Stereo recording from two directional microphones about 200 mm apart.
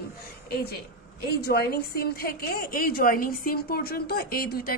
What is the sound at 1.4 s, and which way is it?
A woman's voice, 50° left (ahead or behind).